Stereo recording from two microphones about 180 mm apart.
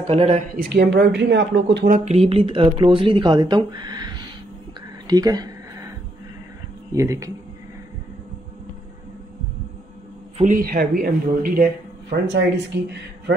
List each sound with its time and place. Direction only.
0.0 s speech: 35° right (ahead or behind)
0.6 s speech: 70° right (ahead or behind)
2.0 s speech: 35° right (ahead or behind)
5.0 s a sound: 20° right (ahead or behind)
7.0 s speech: 15° right (ahead or behind)
10.3 s a man's voice: 45° right (ahead or behind)